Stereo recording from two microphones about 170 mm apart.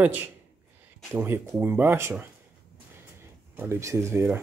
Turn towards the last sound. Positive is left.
turn(degrees=-15)  # may be behind; listen again after turning